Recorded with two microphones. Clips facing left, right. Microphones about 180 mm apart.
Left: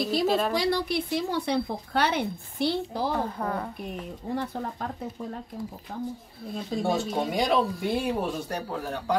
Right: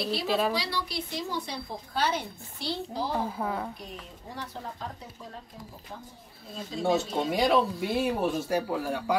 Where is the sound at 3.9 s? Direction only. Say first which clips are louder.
Left 10 dB; 55° left (ahead or behind).